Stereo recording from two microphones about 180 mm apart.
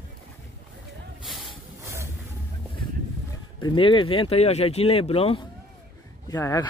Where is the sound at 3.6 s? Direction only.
25° left (ahead or behind).